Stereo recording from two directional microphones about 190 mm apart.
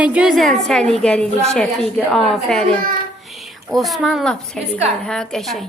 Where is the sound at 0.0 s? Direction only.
5° right (ahead or behind).